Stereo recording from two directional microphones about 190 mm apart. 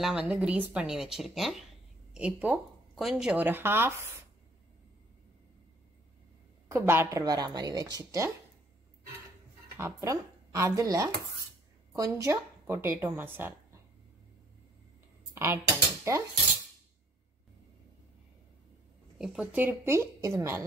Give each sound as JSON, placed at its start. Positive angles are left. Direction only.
{"t": 0.0, "sound": "speech", "side_deg": -5}
{"t": 6.7, "sound": "a woman's voice", "side_deg": -15}
{"t": 9.8, "sound": "a woman's voice", "side_deg": -15}
{"t": 15.3, "sound": "speech", "side_deg": -15}
{"t": 19.1, "sound": "speech", "side_deg": -5}